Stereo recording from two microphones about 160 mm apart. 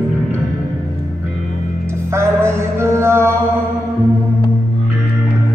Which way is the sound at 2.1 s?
15° right (ahead or behind).